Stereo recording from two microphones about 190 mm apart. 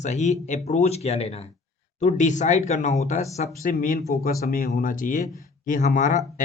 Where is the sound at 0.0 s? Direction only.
35° left (ahead or behind).